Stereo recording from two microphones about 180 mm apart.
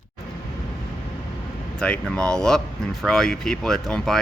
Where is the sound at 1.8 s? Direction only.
5° left (ahead or behind).